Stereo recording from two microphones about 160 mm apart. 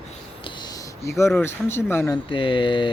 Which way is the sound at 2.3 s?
30° left (ahead or behind).